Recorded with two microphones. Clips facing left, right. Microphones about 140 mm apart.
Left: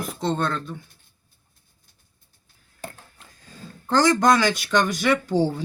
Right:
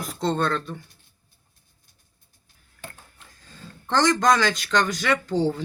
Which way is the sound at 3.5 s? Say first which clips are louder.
Left 3 dB; 10° left (ahead or behind).